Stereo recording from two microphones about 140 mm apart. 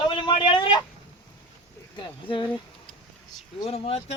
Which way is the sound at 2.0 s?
35° left (ahead or behind).